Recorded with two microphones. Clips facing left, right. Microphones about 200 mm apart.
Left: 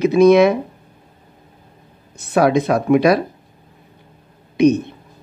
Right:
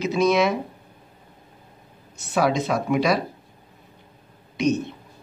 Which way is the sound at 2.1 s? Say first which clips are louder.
Left 7 dB; 55° left (ahead or behind).